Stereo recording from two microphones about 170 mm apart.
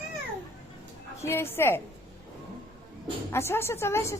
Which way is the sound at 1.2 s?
15° left (ahead or behind).